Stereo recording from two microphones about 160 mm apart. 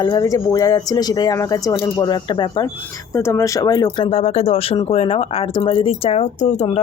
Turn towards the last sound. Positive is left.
turn(degrees=45)  # may be behind; listen again after turning